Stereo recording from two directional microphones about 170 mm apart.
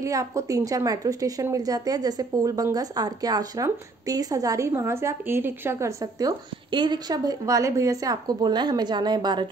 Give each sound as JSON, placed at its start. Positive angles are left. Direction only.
{"t": 0.0, "sound": "a woman's voice", "side_deg": -20}